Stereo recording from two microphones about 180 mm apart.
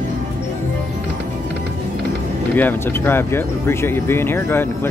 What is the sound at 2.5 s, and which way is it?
Speech, 10° left (ahead or behind).